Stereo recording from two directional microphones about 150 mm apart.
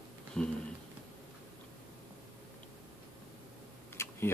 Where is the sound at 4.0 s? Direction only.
15° left (ahead or behind).